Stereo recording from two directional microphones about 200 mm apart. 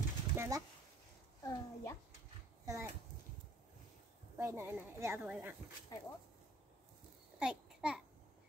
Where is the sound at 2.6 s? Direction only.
15° right (ahead or behind).